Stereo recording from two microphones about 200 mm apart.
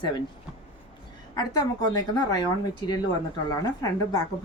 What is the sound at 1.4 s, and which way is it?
Speech, 20° left (ahead or behind).